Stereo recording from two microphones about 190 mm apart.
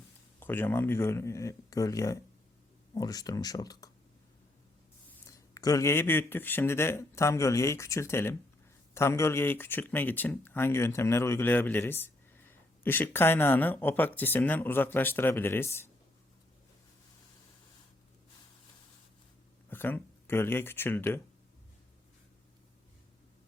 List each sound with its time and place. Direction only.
0.3 s speech: 10° left (ahead or behind)
5.2 s speech: 20° left (ahead or behind)
19.7 s speech: 10° left (ahead or behind)